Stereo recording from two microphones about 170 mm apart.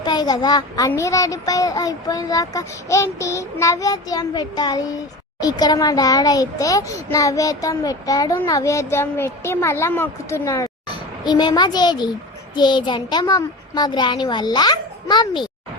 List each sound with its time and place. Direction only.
0.0 s a child's voice: 25° left (ahead or behind)